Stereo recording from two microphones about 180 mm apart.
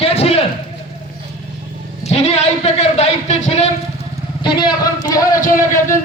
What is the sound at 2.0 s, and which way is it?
A man's voice, 35° left (ahead or behind).